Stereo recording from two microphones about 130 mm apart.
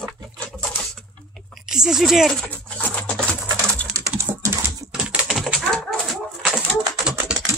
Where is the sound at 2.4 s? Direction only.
15° left (ahead or behind).